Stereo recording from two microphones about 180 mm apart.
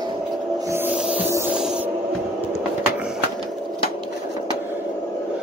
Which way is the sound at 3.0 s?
5° right (ahead or behind).